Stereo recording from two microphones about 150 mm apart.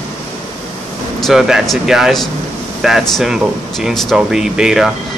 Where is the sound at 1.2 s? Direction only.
Centre (ahead or behind).